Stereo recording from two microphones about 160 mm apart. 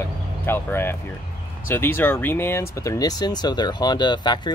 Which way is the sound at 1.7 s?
15° left (ahead or behind).